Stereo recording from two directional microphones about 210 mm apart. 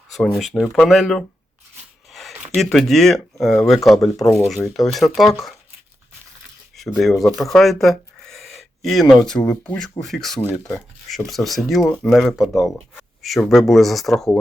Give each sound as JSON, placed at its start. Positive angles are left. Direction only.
{"t": 0.1, "sound": "speech", "side_deg": 0}
{"t": 6.7, "sound": "speech", "side_deg": 0}